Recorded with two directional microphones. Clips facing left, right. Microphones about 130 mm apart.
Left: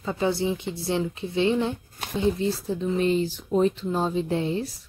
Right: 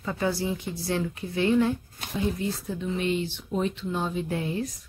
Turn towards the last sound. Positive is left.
turn(degrees=30)  # may be behind; listen again after turning